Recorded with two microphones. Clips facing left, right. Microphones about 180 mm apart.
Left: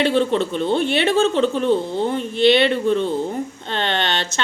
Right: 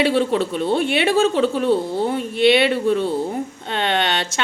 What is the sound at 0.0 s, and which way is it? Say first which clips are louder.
A woman's voice: even; 10° right (ahead or behind).